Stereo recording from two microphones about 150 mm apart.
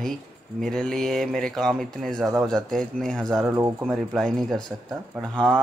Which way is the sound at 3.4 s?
15° right (ahead or behind).